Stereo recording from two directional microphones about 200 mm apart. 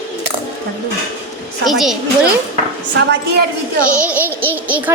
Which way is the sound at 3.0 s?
60° right (ahead or behind).